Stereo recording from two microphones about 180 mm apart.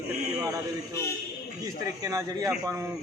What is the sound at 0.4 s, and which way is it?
A man's voice, 20° right (ahead or behind).